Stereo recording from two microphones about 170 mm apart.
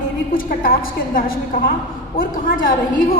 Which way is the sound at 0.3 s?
55° left (ahead or behind).